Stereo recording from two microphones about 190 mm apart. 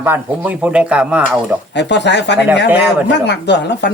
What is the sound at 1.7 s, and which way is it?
Speech, 65° left (ahead or behind).